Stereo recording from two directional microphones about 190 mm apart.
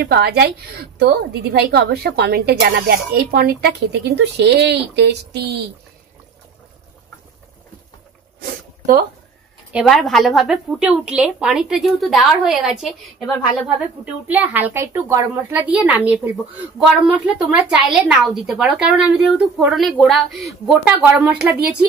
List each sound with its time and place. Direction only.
0.0 s a woman's voice: 60° right (ahead or behind)
8.4 s a sound: 50° right (ahead or behind)
9.7 s a woman's voice: centre (ahead or behind)
17.0 s a woman's voice: 5° right (ahead or behind)